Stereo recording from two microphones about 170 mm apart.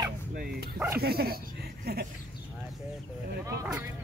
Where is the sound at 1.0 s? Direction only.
65° right (ahead or behind).